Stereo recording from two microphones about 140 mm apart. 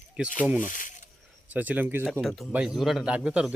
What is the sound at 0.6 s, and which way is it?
Speech, 70° left (ahead or behind).